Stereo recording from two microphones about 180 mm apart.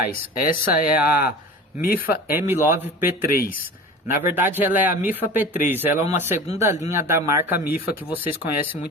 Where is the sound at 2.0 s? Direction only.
10° right (ahead or behind).